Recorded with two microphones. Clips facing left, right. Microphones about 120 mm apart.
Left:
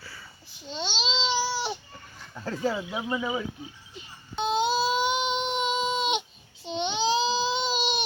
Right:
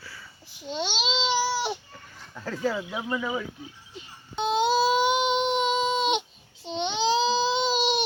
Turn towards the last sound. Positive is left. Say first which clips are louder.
# right 3 dB
turn(degrees=0)  # may be behind; listen again after turning